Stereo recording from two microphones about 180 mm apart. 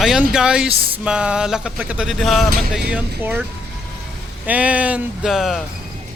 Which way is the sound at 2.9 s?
10° right (ahead or behind).